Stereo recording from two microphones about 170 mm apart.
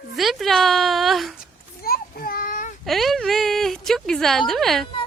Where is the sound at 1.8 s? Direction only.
60° left (ahead or behind).